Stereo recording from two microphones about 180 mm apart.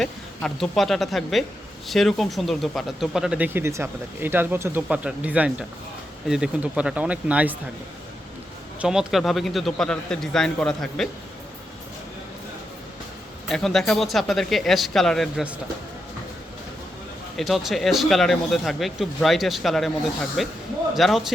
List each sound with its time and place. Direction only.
0.0 s speech: centre (ahead or behind)
8.8 s speech: 5° right (ahead or behind)
13.5 s speech: centre (ahead or behind)
17.3 s speech: centre (ahead or behind)